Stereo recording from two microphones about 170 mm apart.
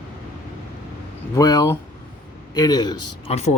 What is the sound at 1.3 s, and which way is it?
A man's voice, 20° left (ahead or behind).